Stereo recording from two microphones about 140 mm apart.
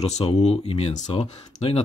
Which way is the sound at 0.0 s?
45° left (ahead or behind).